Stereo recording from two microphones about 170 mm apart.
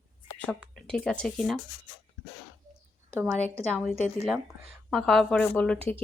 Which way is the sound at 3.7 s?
5° left (ahead or behind).